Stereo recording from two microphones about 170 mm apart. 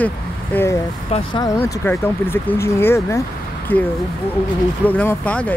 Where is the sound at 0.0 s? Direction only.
10° left (ahead or behind).